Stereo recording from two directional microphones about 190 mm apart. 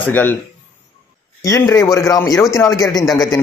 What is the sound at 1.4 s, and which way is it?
Speech, 15° left (ahead or behind).